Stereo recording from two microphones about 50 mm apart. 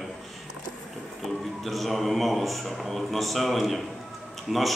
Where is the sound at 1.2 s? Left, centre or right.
Centre.